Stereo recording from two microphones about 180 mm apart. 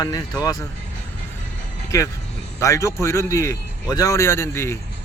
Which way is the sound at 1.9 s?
20° left (ahead or behind).